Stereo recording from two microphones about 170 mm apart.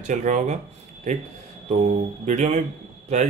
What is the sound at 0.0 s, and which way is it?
Speech, 45° right (ahead or behind).